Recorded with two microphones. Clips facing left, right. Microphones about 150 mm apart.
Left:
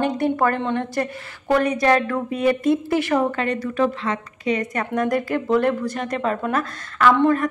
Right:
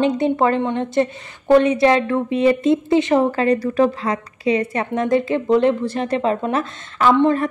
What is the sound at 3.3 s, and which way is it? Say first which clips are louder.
A woman's voice: right 6 dB; 35° right (ahead or behind).